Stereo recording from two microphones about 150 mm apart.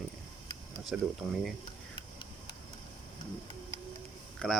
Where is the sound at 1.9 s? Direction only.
30° left (ahead or behind).